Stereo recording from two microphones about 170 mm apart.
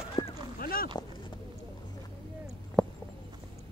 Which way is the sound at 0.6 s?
60° left (ahead or behind).